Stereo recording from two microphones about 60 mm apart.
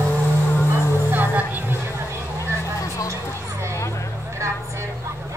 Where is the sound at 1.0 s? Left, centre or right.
Right.